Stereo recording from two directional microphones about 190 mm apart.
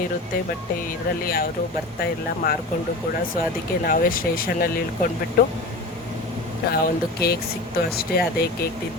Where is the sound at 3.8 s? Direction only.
50° left (ahead or behind).